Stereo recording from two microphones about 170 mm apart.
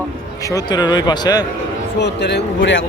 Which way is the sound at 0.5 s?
25° left (ahead or behind).